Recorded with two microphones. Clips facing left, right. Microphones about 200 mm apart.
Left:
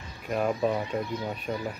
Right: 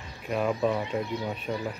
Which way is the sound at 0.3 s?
5° left (ahead or behind).